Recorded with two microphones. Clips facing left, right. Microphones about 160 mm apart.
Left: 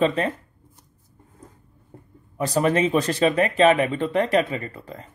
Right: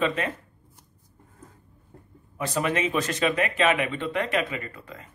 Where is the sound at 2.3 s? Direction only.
35° left (ahead or behind).